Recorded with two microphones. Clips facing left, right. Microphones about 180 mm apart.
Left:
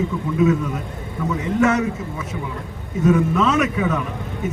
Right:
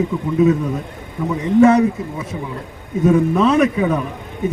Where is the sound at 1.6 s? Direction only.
30° right (ahead or behind).